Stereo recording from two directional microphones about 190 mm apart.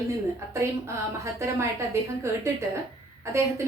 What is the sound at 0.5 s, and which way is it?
Speech, 15° right (ahead or behind).